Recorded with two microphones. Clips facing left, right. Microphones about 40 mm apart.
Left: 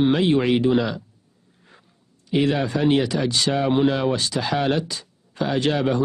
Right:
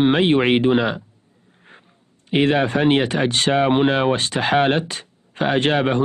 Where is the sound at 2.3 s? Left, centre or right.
Right.